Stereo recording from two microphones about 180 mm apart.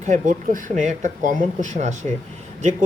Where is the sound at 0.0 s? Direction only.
45° right (ahead or behind).